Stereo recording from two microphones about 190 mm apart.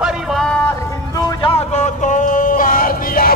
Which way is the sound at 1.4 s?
35° left (ahead or behind).